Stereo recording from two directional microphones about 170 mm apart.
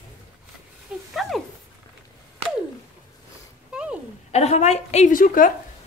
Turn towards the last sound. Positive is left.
turn(degrees=50)  # may be behind; listen again after turning